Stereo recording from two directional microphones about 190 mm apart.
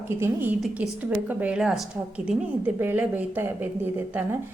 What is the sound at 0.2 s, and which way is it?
A woman's voice, 10° right (ahead or behind).